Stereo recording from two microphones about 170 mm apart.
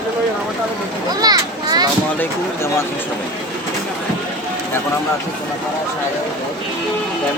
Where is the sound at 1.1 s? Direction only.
25° right (ahead or behind).